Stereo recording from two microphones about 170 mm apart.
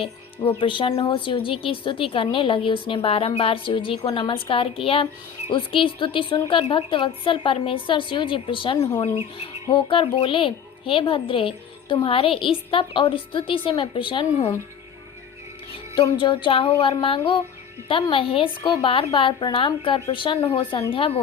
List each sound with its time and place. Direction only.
0.0 s speech: 30° left (ahead or behind)
16.0 s speech: 30° left (ahead or behind)